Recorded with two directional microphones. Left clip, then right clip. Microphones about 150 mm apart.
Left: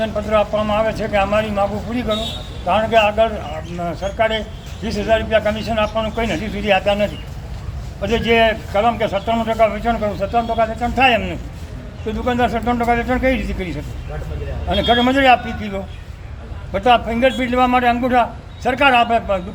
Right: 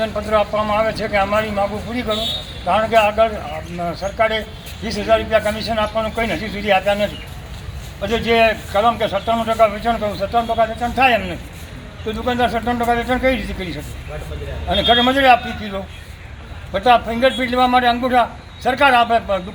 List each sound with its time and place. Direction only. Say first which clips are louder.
0.0 s a man's voice: even; centre (ahead or behind)
16.7 s a man's voice: even; 10° left (ahead or behind)